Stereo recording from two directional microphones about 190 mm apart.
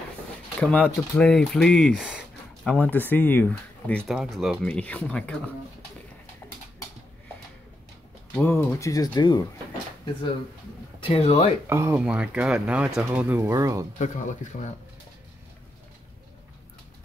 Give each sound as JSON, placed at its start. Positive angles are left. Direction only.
{"t": 0.6, "sound": "speech", "side_deg": 5}
{"t": 8.4, "sound": "speech", "side_deg": 10}
{"t": 11.0, "sound": "speech", "side_deg": 30}
{"t": 11.7, "sound": "speech", "side_deg": -10}
{"t": 13.9, "sound": "speech", "side_deg": 40}